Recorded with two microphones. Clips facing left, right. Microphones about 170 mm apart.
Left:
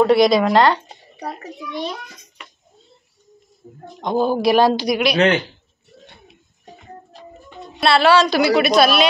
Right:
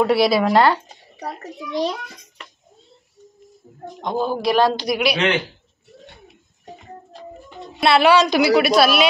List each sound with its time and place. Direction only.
0.0 s a woman's voice: 5° right (ahead or behind)
4.0 s speech: 5° left (ahead or behind)
4.8 s speech: 5° right (ahead or behind)
5.1 s speech: 40° left (ahead or behind)
7.8 s a woman's voice: 15° right (ahead or behind)